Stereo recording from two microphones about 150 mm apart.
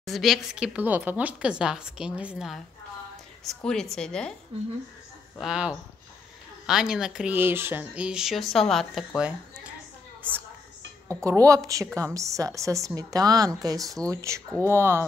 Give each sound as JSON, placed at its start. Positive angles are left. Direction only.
{"t": 0.0, "sound": "speech", "side_deg": 0}
{"t": 5.4, "sound": "speech", "side_deg": -5}
{"t": 11.1, "sound": "a woman's voice", "side_deg": -20}